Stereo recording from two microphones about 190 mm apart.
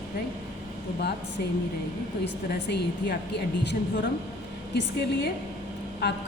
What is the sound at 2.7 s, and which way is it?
A woman's voice, 60° left (ahead or behind).